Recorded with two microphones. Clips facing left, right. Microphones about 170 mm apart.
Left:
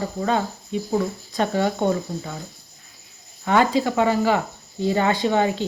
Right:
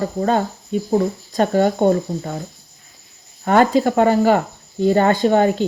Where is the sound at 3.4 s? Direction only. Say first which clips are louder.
Right 5 dB; 50° right (ahead or behind).